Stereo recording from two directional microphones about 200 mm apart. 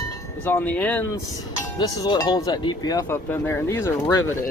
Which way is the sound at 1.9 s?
20° left (ahead or behind).